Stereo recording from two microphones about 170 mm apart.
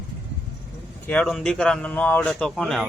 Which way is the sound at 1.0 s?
5° left (ahead or behind).